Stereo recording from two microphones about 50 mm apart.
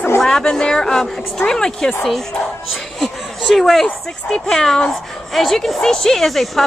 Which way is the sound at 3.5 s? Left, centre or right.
Centre.